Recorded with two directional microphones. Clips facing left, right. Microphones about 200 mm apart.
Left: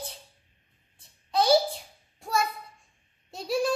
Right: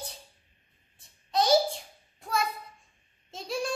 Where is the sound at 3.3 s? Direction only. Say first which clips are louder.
Left 5 dB; centre (ahead or behind).